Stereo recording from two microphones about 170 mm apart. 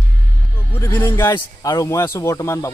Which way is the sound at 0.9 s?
15° left (ahead or behind).